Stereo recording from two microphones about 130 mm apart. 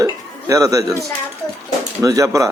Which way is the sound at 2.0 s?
25° right (ahead or behind).